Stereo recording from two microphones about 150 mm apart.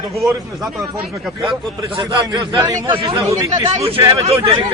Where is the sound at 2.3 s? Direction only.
25° right (ahead or behind).